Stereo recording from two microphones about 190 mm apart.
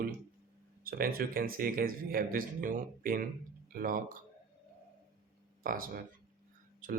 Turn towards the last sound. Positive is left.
turn(degrees=-45)  # may be behind; listen again after turning